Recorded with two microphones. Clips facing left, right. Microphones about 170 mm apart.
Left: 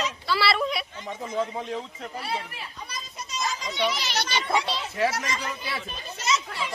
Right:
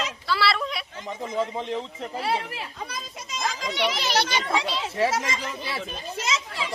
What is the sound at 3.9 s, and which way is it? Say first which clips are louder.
Speech: right 5 dB; 50° right (ahead or behind).